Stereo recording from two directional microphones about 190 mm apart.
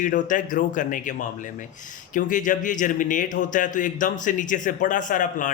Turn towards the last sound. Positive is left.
turn(degrees=40)  # may be behind; listen again after turning